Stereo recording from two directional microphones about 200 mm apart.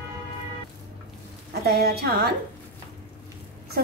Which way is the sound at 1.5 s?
55° right (ahead or behind).